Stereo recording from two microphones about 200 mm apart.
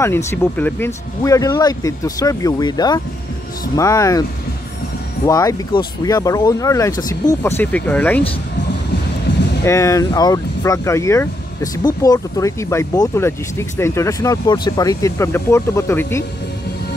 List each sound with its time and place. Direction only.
0.0 s speech: 15° left (ahead or behind)
5.2 s speech: 15° left (ahead or behind)
9.7 s speech: 15° left (ahead or behind)